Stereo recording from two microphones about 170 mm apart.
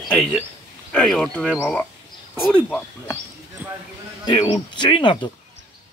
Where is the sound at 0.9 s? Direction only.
5° left (ahead or behind).